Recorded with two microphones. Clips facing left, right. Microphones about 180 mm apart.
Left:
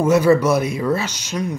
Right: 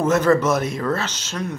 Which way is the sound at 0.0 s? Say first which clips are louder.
Left 3 dB; 10° left (ahead or behind).